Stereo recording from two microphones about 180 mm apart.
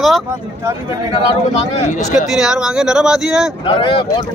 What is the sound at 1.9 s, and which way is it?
Speech, 45° left (ahead or behind).